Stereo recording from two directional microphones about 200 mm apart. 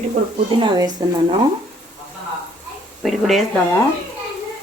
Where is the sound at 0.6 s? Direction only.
20° right (ahead or behind).